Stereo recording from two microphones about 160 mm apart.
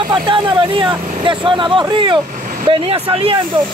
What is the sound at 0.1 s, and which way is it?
Speech, 30° right (ahead or behind).